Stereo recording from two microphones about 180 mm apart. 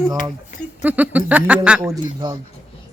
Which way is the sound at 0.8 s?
10° right (ahead or behind).